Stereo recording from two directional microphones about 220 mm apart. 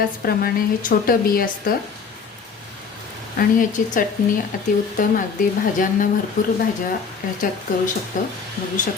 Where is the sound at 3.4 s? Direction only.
40° left (ahead or behind).